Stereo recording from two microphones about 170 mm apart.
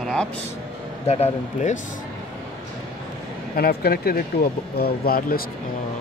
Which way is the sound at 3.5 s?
65° left (ahead or behind).